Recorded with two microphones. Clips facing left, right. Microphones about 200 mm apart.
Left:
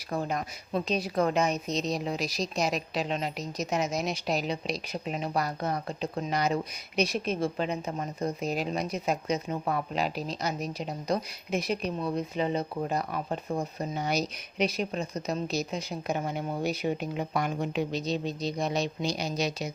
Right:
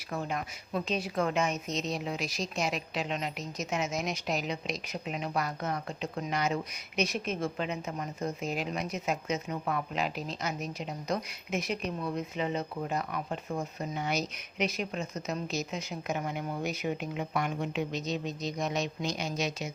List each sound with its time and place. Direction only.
0.1 s speech: 35° left (ahead or behind)